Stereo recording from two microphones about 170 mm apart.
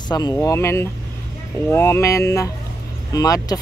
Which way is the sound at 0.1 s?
20° left (ahead or behind).